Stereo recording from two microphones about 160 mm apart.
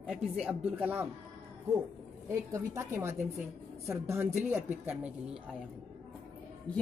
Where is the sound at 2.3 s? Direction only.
20° right (ahead or behind).